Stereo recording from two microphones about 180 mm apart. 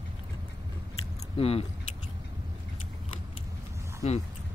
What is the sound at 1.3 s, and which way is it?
Speech, 35° left (ahead or behind).